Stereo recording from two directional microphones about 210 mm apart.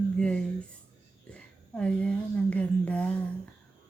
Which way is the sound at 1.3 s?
5° left (ahead or behind).